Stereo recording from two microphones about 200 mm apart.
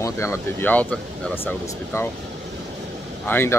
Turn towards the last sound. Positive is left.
turn(degrees=10)  # may be behind; listen again after turning